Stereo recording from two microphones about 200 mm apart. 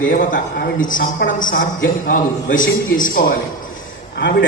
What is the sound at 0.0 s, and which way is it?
A man's voice, 40° left (ahead or behind).